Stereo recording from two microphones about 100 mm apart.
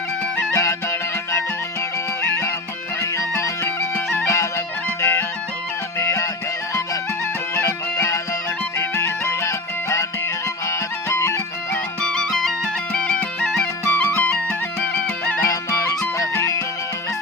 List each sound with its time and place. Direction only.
0.3 s music: 30° left (ahead or behind)
3.0 s music: 30° left (ahead or behind)
7.5 s music: 25° left (ahead or behind)
11.7 s music: 10° left (ahead or behind)
13.8 s music: 25° left (ahead or behind)
15.4 s music: 30° left (ahead or behind)